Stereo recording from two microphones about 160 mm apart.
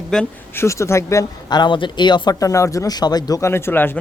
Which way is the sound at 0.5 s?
15° left (ahead or behind).